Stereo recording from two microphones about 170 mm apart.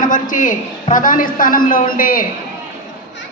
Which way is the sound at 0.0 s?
50° left (ahead or behind).